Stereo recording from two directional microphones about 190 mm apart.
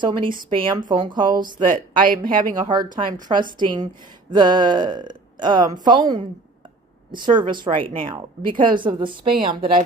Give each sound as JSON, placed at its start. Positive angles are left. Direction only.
{"t": 0.0, "sound": "speech", "side_deg": -25}
{"t": 2.0, "sound": "speech", "side_deg": -45}
{"t": 2.6, "sound": "speech", "side_deg": -20}